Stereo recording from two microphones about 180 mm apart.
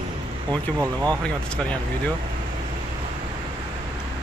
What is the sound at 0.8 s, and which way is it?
Speech, 20° right (ahead or behind).